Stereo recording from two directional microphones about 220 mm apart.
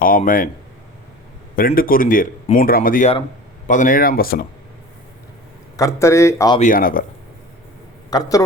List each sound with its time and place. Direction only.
0.0 s speech: 40° left (ahead or behind)
1.5 s speech: 40° left (ahead or behind)
5.7 s speech: 15° left (ahead or behind)
6.6 s speech: 40° left (ahead or behind)
8.1 s speech: 15° left (ahead or behind)